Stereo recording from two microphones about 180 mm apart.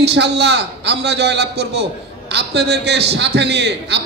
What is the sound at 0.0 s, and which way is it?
A man's voice, 70° right (ahead or behind).